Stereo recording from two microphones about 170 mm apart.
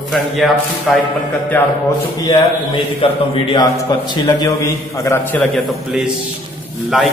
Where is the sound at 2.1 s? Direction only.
20° left (ahead or behind).